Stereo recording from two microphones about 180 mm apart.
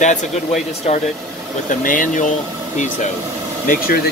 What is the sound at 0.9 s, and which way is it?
Speech, 40° left (ahead or behind).